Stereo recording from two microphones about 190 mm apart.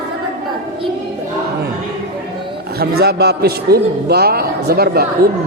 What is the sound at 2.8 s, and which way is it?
Music, 55° right (ahead or behind).